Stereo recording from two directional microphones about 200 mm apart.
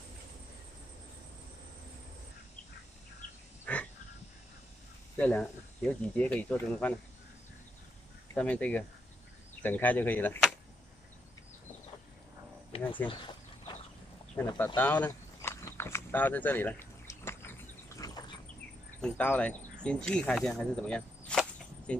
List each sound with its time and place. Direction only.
3.7 s a sound: 5° left (ahead or behind)
5.1 s speech: 5° left (ahead or behind)
8.4 s speech: 5° left (ahead or behind)
12.9 s speech: 25° left (ahead or behind)
14.3 s speech: 15° left (ahead or behind)
14.8 s a sound: 10° left (ahead or behind)
18.9 s speech: 5° left (ahead or behind)